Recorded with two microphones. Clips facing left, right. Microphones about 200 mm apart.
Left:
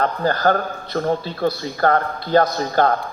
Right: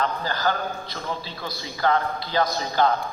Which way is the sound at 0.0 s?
55° left (ahead or behind).